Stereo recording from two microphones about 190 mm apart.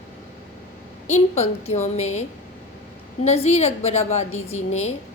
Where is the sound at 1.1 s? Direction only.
35° left (ahead or behind).